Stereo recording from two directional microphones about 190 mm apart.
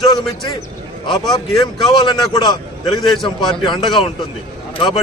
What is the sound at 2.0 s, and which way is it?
A man's voice, 20° left (ahead or behind).